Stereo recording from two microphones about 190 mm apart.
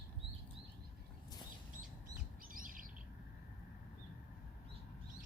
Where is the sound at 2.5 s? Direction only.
45° right (ahead or behind).